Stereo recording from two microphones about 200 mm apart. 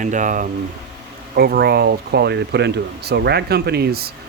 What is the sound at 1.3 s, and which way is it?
Speech, 50° right (ahead or behind).